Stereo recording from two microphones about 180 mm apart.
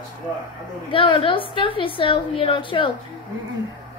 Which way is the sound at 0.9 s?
30° left (ahead or behind).